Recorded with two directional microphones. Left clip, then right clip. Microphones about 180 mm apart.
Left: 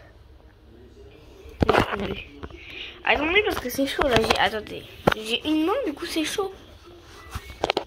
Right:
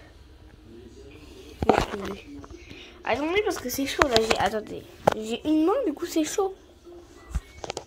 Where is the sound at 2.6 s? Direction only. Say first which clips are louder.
Left 7 dB; 5° right (ahead or behind).